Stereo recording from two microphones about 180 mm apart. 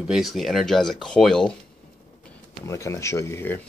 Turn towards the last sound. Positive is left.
turn(degrees=10)  # may be behind; listen again after turning